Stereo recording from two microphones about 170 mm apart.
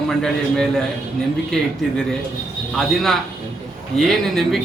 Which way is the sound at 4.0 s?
Centre (ahead or behind).